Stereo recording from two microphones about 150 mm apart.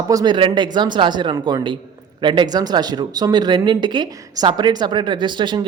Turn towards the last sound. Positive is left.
turn(degrees=-30)  # may be behind; listen again after turning